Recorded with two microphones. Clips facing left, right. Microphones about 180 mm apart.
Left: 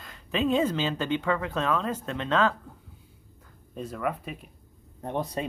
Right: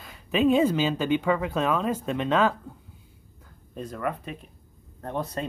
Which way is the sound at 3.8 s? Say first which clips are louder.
Even; 5° left (ahead or behind).